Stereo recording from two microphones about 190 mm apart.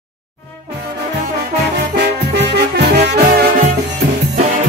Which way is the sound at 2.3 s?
60° right (ahead or behind).